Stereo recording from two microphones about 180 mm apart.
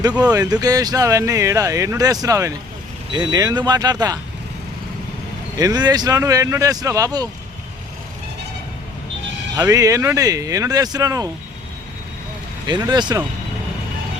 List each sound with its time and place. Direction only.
0.2 s speech: 20° right (ahead or behind)
5.5 s speech: 20° right (ahead or behind)
9.6 s speech: 20° right (ahead or behind)
12.8 s speech: 25° right (ahead or behind)